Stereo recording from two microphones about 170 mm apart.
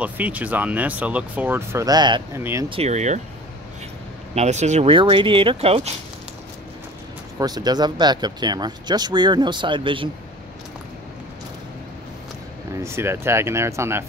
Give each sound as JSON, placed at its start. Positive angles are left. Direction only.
{"t": 0.0, "sound": "speech", "side_deg": -10}
{"t": 2.3, "sound": "speech", "side_deg": -15}
{"t": 2.7, "sound": "speech", "side_deg": -40}
{"t": 4.4, "sound": "speech", "side_deg": -40}
{"t": 4.9, "sound": "speech", "side_deg": -30}
{"t": 7.3, "sound": "speech", "side_deg": -25}
{"t": 12.8, "sound": "speech", "side_deg": -15}